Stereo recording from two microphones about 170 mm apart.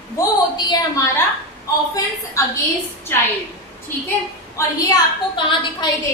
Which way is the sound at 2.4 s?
20° left (ahead or behind).